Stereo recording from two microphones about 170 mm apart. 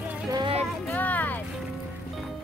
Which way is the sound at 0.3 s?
30° right (ahead or behind).